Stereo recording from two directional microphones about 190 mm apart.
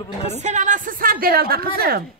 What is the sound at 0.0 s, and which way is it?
Speech, 30° left (ahead or behind).